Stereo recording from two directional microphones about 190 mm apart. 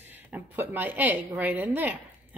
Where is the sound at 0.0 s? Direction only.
10° right (ahead or behind).